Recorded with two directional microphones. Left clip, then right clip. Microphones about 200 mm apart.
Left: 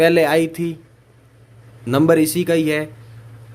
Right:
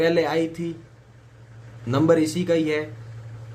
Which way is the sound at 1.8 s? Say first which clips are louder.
Left 4 dB; 40° left (ahead or behind).